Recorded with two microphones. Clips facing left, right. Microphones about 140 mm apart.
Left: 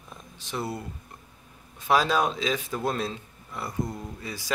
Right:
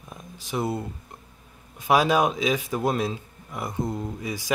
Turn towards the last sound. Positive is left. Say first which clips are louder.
# right 5 dB
turn(degrees=-15)  # may be behind; listen again after turning